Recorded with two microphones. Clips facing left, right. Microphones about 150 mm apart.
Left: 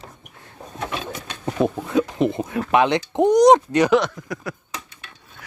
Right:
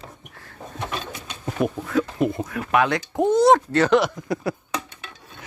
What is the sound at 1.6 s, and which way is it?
Speech, 20° left (ahead or behind).